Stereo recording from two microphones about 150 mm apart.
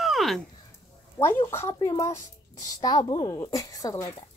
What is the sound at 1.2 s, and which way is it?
A woman's voice, 15° left (ahead or behind).